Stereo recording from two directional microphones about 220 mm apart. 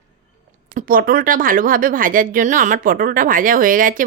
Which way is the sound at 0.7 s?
40° right (ahead or behind).